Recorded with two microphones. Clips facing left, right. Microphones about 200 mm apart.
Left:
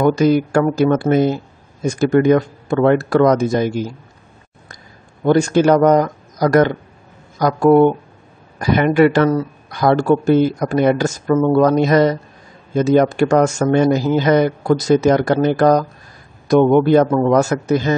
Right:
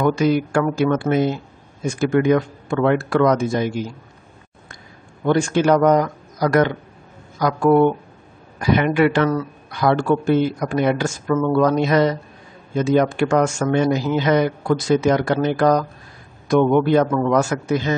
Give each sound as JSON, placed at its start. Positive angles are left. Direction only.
{"t": 0.0, "sound": "speech", "side_deg": 40}
{"t": 5.2, "sound": "speech", "side_deg": 40}